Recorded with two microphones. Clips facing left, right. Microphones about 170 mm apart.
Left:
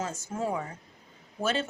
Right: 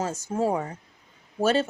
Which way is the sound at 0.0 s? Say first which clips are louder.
Right 6 dB; 40° right (ahead or behind).